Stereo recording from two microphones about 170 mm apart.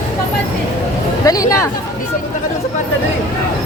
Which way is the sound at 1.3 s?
20° left (ahead or behind).